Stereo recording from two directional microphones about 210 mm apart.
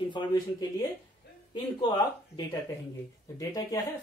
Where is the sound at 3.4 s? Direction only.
15° left (ahead or behind).